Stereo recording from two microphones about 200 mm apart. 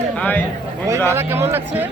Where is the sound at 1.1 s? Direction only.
10° right (ahead or behind).